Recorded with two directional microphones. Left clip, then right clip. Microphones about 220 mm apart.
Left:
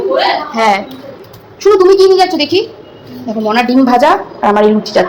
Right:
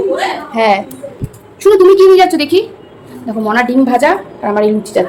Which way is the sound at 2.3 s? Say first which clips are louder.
Right 1 dB; 45° right (ahead or behind).